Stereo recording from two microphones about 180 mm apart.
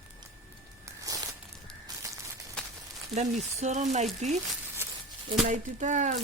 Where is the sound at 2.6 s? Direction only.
5° left (ahead or behind).